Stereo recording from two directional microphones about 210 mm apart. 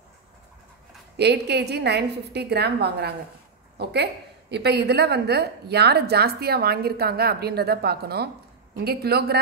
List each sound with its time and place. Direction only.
1.1 s a woman's voice: 50° right (ahead or behind)